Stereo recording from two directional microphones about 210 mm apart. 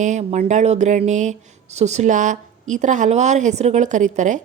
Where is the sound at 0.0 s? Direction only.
35° right (ahead or behind).